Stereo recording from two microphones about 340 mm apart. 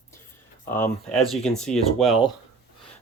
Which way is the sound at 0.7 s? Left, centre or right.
Centre.